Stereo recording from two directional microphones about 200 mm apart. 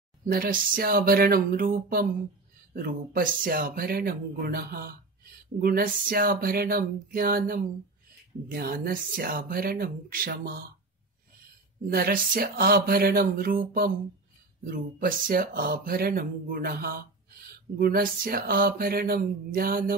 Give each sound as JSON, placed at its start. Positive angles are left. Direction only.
{"t": 0.3, "sound": "speech", "side_deg": -45}
{"t": 11.9, "sound": "speech", "side_deg": -45}